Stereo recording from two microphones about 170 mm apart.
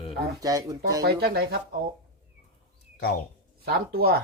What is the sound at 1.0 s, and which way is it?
Speech, 65° right (ahead or behind).